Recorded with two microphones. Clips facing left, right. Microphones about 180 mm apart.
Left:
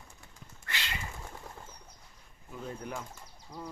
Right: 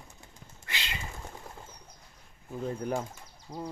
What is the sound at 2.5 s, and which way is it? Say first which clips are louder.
Speech: right 7 dB; 40° right (ahead or behind).